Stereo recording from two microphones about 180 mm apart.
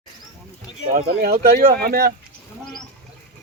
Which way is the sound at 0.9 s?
55° right (ahead or behind).